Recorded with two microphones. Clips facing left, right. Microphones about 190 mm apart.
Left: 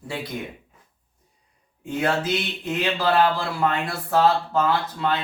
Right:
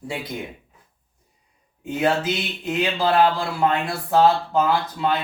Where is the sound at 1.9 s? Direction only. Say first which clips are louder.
Right 3 dB; 20° right (ahead or behind).